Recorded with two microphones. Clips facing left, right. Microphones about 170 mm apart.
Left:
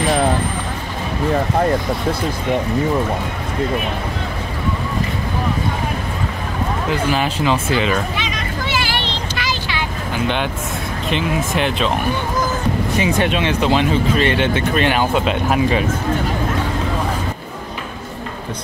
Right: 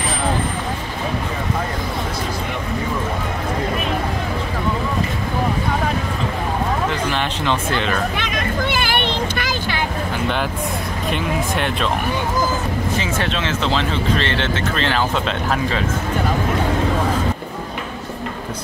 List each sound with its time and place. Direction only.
7.1 s speech: 5° left (ahead or behind)
8.2 s vehicle: 55° right (ahead or behind)
11.5 s speech: centre (ahead or behind)
13.2 s speech: 15° left (ahead or behind)